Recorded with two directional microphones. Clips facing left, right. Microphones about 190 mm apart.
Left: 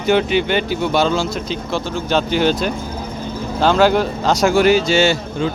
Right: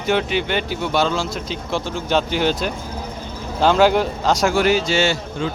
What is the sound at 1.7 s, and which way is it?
Speech, 10° right (ahead or behind).